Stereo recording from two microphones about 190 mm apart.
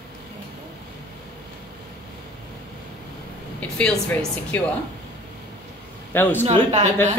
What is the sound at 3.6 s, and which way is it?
Speech, 5° left (ahead or behind).